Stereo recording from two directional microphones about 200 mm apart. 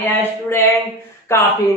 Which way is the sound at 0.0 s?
10° left (ahead or behind).